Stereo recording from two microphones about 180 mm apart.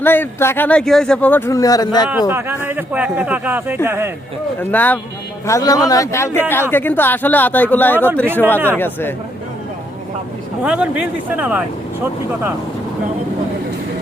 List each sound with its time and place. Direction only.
0.0 s speech: 10° left (ahead or behind)
2.3 s speech: 10° right (ahead or behind)
4.6 s a man's voice: 10° left (ahead or behind)
8.5 s speech: 10° right (ahead or behind)
8.8 s speech: 10° left (ahead or behind)
10.6 s speech: 5° right (ahead or behind)